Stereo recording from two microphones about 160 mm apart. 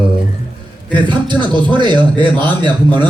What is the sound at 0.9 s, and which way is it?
Speech, 30° right (ahead or behind).